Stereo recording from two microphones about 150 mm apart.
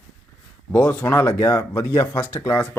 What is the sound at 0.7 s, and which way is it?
Speech, 15° left (ahead or behind).